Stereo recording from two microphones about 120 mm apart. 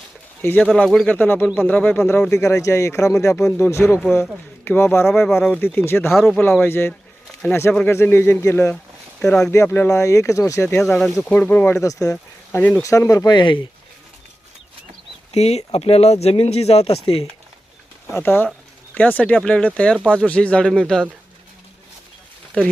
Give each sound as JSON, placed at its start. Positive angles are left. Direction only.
{"t": 0.4, "sound": "speech", "side_deg": 15}
{"t": 0.7, "sound": "speech", "side_deg": 5}
{"t": 2.3, "sound": "speech", "side_deg": 25}
{"t": 5.0, "sound": "speech", "side_deg": 0}
{"t": 6.1, "sound": "speech", "side_deg": 0}
{"t": 6.6, "sound": "speech", "side_deg": 20}
{"t": 10.8, "sound": "speech", "side_deg": 5}
{"t": 11.8, "sound": "speech", "side_deg": 30}
{"t": 12.1, "sound": "speech", "side_deg": 15}
{"t": 12.8, "sound": "speech", "side_deg": 25}
{"t": 15.3, "sound": "speech", "side_deg": 60}
{"t": 18.1, "sound": "speech", "side_deg": 20}